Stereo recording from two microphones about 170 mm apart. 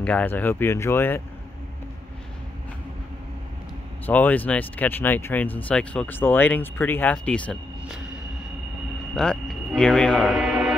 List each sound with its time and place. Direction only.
0.0 s speech: 10° left (ahead or behind)
4.0 s speech: 10° left (ahead or behind)
9.1 s speech: 5° left (ahead or behind)